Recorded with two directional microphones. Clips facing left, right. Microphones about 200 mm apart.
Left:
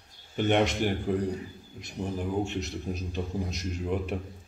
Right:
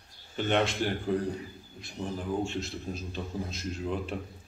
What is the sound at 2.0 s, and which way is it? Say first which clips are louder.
A man's voice: left 2 dB; 15° left (ahead or behind).